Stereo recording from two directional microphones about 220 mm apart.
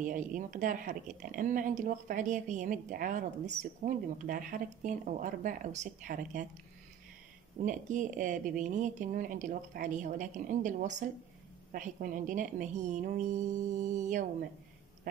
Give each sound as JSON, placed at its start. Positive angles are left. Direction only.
{"t": 0.0, "sound": "speech", "side_deg": -35}
{"t": 7.5, "sound": "speech", "side_deg": -35}